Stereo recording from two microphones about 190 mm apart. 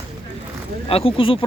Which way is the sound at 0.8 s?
30° left (ahead or behind).